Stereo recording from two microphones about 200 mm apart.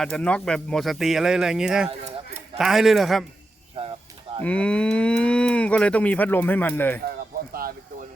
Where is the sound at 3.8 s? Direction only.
30° right (ahead or behind).